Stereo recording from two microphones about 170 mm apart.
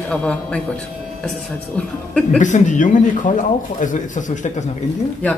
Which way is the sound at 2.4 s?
45° left (ahead or behind).